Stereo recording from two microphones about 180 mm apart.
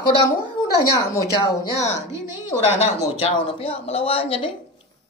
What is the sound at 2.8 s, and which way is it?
Speech, 30° left (ahead or behind).